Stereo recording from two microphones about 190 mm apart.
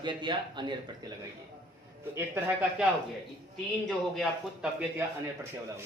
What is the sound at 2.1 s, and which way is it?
Speech, 15° right (ahead or behind).